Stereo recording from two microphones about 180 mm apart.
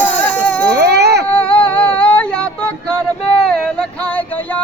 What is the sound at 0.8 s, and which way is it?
Baby cry, 65° right (ahead or behind).